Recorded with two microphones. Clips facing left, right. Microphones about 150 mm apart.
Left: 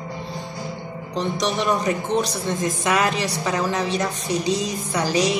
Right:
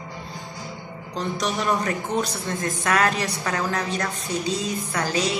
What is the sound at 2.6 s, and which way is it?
Music, 10° left (ahead or behind).